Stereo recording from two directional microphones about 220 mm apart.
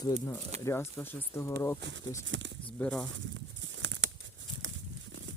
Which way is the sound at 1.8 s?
55° right (ahead or behind).